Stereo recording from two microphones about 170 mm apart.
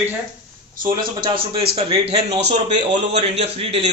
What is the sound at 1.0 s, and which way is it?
A man's voice, 30° right (ahead or behind).